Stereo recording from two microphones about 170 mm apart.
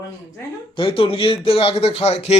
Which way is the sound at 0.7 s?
30° left (ahead or behind).